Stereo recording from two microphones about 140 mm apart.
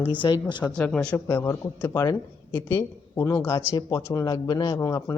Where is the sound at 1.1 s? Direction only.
20° left (ahead or behind).